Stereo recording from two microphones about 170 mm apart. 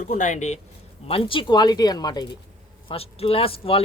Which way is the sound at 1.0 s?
35° left (ahead or behind).